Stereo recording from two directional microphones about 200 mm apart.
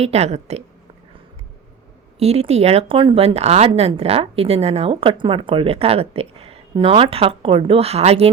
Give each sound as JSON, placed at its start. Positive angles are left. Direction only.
{"t": 0.0, "sound": "a woman's voice", "side_deg": -30}
{"t": 2.1, "sound": "speech", "side_deg": -30}